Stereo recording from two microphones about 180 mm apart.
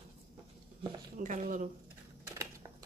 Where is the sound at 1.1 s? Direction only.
45° right (ahead or behind).